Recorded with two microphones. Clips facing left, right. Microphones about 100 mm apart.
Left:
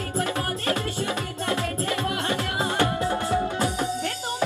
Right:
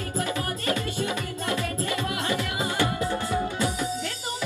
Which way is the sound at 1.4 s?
50° left (ahead or behind).